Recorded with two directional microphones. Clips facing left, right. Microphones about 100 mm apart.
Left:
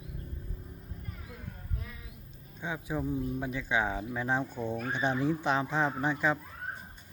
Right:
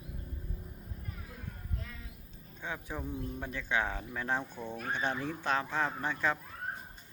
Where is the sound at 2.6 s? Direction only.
15° left (ahead or behind).